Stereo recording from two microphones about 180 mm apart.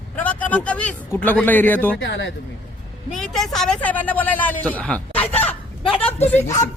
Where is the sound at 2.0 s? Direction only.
80° left.